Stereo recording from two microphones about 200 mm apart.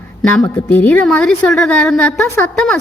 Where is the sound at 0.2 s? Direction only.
5° left (ahead or behind).